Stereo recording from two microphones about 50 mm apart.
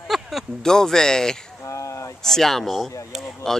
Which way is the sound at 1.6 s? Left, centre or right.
Left.